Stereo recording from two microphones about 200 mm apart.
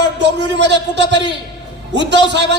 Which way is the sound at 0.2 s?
60° right (ahead or behind).